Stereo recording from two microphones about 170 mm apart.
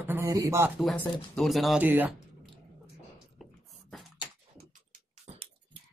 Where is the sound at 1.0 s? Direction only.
Centre (ahead or behind).